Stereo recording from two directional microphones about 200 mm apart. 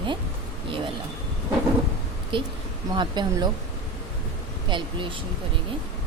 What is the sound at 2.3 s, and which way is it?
A woman's voice, 25° right (ahead or behind).